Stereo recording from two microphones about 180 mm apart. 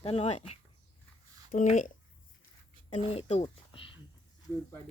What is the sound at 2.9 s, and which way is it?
Speech, 35° left (ahead or behind).